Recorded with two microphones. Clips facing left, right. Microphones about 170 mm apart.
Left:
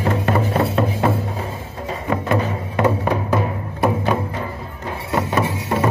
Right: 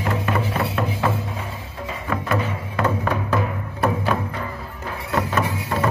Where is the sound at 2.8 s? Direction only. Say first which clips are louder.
Left 4 dB; 20° left (ahead or behind).